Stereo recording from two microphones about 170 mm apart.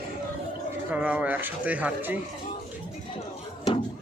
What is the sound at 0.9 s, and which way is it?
Speech, 10° right (ahead or behind).